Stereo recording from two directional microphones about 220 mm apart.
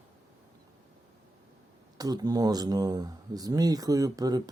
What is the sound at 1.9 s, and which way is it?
Speech, 15° right (ahead or behind).